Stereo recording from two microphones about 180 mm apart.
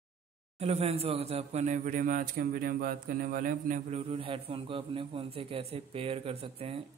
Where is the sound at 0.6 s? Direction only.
35° right (ahead or behind).